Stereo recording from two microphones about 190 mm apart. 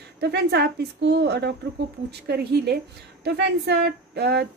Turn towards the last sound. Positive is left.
turn(degrees=-60)  # may be behind; listen again after turning